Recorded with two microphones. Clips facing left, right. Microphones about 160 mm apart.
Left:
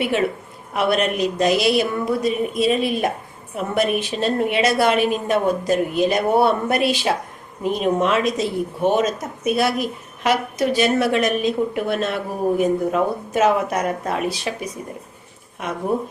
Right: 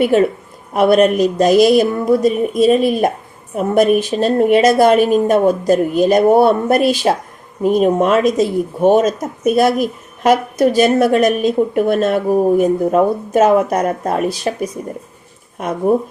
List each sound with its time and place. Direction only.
0.0 s speech: 40° right (ahead or behind)
15.9 s speech: 45° right (ahead or behind)